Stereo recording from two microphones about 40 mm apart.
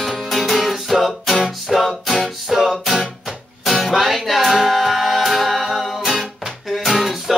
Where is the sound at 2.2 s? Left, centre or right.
Centre.